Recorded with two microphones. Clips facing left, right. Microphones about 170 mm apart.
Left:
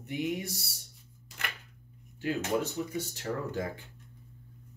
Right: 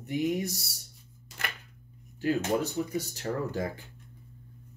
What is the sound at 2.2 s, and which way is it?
Speech, 35° right (ahead or behind).